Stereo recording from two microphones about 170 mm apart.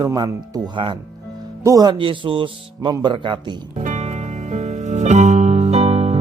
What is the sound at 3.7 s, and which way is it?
Music, 45° right (ahead or behind).